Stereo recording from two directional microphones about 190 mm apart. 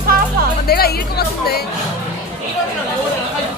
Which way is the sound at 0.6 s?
55° left (ahead or behind).